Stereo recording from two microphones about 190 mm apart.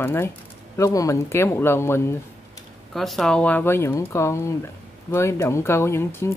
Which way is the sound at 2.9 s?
Centre (ahead or behind).